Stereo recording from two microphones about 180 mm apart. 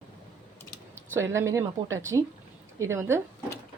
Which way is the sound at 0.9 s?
15° right (ahead or behind).